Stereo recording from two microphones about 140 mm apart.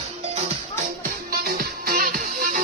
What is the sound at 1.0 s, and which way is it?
Music, 90° right.